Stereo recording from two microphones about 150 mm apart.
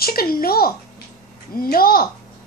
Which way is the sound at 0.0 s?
80° left.